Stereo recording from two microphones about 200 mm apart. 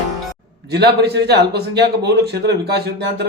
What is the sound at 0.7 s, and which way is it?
Speech, 55° right (ahead or behind).